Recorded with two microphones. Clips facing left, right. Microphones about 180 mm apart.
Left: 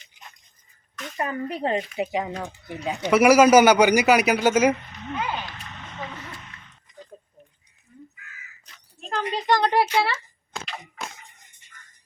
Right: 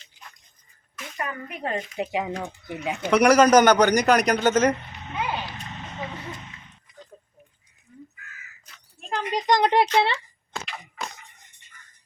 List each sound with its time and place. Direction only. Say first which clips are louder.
0.0 s a sound: even; 20° left (ahead or behind)
1.1 s speech: left 5 dB; 30° left (ahead or behind)
2.0 s speech: left 1 dB; 5° right (ahead or behind)
2.9 s a man's voice: left 1 dB; 5° left (ahead or behind)
8.6 s crow: left 4 dB; 5° right (ahead or behind)
9.3 s speech: right 1 dB; 20° right (ahead or behind)